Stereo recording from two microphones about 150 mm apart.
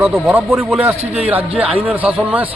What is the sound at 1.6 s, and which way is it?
Speech, 40° right (ahead or behind).